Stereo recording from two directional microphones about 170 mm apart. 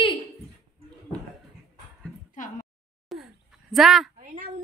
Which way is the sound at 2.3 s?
50° left (ahead or behind).